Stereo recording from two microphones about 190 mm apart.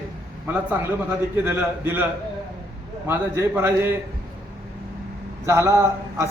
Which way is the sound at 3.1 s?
10° right (ahead or behind).